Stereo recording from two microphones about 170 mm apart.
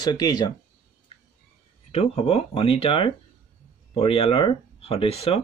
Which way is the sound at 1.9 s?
35° left (ahead or behind).